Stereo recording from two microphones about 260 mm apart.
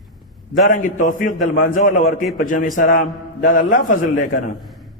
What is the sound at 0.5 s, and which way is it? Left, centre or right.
A man's voice, left.